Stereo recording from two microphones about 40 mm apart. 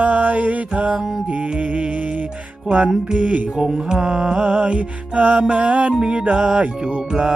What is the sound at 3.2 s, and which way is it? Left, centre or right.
Speech, right.